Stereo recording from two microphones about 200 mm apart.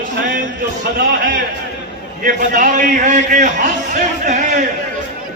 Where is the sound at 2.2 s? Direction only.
40° right (ahead or behind).